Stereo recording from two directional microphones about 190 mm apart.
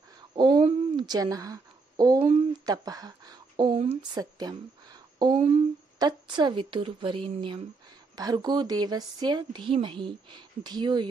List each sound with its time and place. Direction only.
0.3 s speech: 25° right (ahead or behind)